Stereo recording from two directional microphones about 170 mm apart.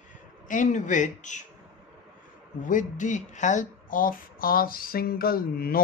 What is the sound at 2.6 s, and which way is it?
Speech, 50° left (ahead or behind).